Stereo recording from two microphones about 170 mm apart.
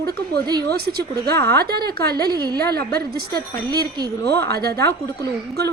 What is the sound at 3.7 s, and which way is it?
Speech, 25° right (ahead or behind).